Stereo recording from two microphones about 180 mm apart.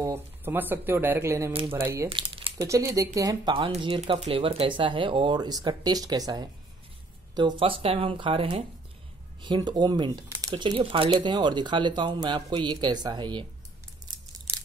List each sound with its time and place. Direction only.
0.0 s speech: 15° right (ahead or behind)
2.0 s speech: 30° right (ahead or behind)